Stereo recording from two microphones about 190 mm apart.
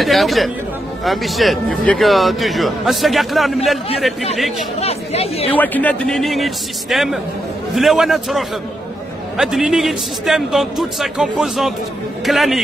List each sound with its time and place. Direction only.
0.0 s a man's voice: centre (ahead or behind)
4.7 s speech: 35° left (ahead or behind)
5.5 s a man's voice: 10° left (ahead or behind)